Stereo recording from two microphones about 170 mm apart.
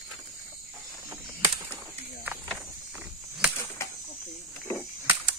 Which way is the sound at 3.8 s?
15° left (ahead or behind).